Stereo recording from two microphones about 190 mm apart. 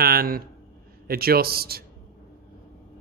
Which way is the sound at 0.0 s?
55° right (ahead or behind).